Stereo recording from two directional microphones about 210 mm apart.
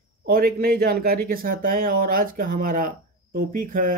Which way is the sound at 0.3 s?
45° right (ahead or behind).